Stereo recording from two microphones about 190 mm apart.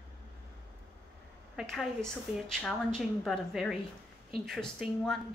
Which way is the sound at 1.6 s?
Centre (ahead or behind).